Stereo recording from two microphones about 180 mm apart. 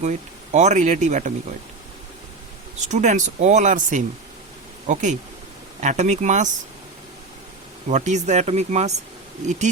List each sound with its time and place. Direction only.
0.0 s speech: 40° right (ahead or behind)
2.8 s speech: 40° right (ahead or behind)
7.9 s speech: 40° right (ahead or behind)